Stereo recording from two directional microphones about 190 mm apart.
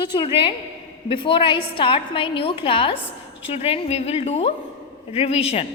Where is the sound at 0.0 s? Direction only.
25° left (ahead or behind).